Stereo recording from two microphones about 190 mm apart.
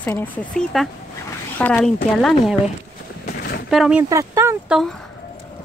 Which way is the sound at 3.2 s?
55° left (ahead or behind).